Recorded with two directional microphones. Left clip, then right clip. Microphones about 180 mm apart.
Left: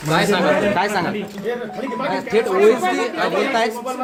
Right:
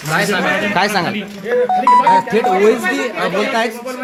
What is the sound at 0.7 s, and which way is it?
A man's voice, 45° right (ahead or behind).